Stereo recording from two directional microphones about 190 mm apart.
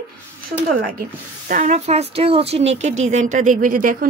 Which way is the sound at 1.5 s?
35° right (ahead or behind).